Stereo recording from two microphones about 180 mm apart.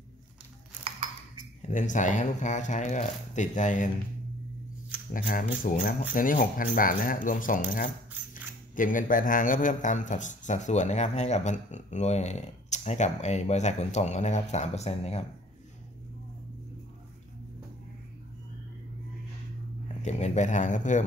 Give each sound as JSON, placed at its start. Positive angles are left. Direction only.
{"t": 1.6, "sound": "speech", "side_deg": 45}
{"t": 5.1, "sound": "speech", "side_deg": 50}
{"t": 20.0, "sound": "speech", "side_deg": 40}